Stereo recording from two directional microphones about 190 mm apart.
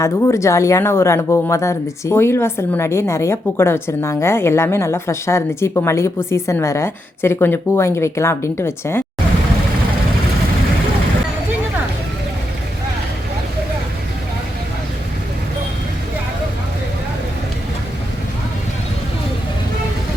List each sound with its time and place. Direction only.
0.0 s speech: 15° left (ahead or behind)